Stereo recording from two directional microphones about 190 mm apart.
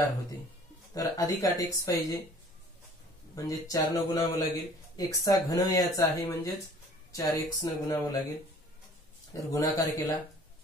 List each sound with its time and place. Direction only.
0.9 s speech: 20° left (ahead or behind)
3.3 s speech: 20° left (ahead or behind)
9.3 s speech: 20° left (ahead or behind)